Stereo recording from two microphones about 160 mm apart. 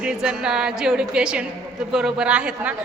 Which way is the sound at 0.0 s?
5° right (ahead or behind).